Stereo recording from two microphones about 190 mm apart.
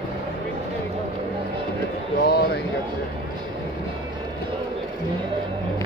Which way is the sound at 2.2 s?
55° left (ahead or behind).